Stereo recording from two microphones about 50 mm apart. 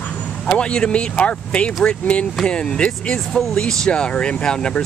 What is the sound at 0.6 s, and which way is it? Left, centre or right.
Speech, centre.